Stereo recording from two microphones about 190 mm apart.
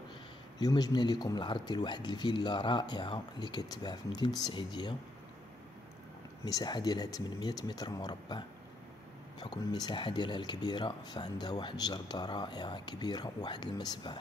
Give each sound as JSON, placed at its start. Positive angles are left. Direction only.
{"t": 0.6, "sound": "speech", "side_deg": 20}
{"t": 6.4, "sound": "speech", "side_deg": 20}